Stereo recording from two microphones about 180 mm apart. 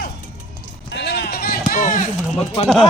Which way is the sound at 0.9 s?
70° left (ahead or behind).